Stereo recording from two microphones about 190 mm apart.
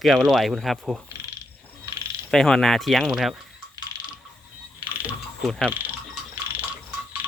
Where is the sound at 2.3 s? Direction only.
Centre (ahead or behind).